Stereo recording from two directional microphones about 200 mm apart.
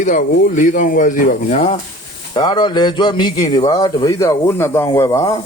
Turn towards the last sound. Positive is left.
turn(degrees=15)  # may be behind; listen again after turning